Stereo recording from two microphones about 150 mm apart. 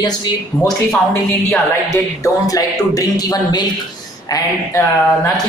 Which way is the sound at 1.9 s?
20° left (ahead or behind).